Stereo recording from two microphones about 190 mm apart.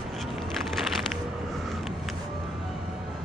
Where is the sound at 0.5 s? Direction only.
Centre (ahead or behind).